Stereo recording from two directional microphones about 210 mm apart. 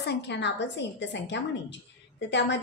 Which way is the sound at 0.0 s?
55° left (ahead or behind).